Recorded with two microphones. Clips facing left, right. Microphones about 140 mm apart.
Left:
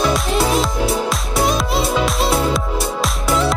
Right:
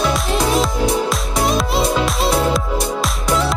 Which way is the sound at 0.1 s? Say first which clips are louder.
Even; centre (ahead or behind).